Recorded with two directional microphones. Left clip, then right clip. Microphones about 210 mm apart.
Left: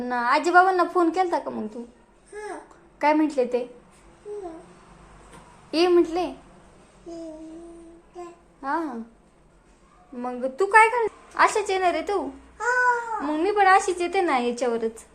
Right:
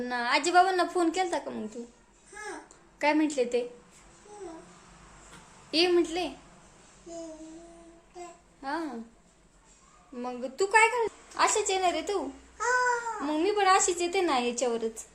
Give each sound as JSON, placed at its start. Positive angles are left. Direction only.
{"t": 0.0, "sound": "a woman's voice", "side_deg": 0}
{"t": 3.0, "sound": "a woman's voice", "side_deg": 0}
{"t": 5.7, "sound": "a woman's voice", "side_deg": 0}
{"t": 8.6, "sound": "a woman's voice", "side_deg": 0}
{"t": 10.2, "sound": "a woman's voice", "side_deg": 0}
{"t": 13.2, "sound": "a woman's voice", "side_deg": 0}